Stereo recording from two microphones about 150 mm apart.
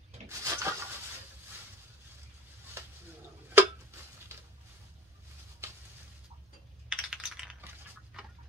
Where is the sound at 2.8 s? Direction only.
15° right (ahead or behind).